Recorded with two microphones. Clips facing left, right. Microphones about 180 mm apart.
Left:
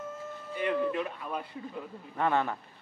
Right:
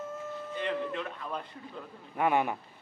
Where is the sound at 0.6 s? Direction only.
10° left (ahead or behind).